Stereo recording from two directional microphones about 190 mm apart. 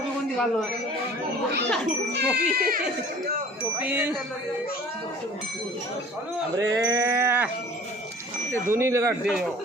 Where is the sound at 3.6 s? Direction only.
10° right (ahead or behind).